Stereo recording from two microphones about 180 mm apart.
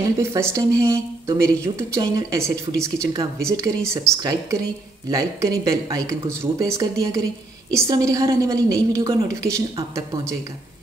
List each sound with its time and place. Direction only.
0.2 s speech: 15° right (ahead or behind)